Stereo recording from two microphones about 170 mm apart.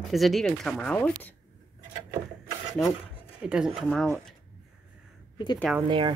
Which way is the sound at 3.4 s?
5° right (ahead or behind).